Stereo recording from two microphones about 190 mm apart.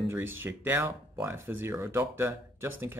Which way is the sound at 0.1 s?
10° right (ahead or behind).